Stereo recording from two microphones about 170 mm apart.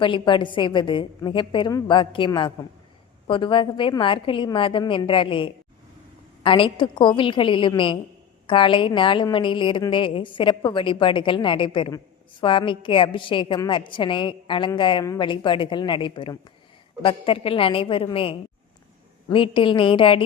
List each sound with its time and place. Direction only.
0.0 s a woman's voice: 30° left (ahead or behind)